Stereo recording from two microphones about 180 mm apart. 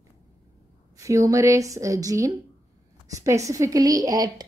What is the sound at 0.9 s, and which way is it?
A woman's voice, 15° right (ahead or behind).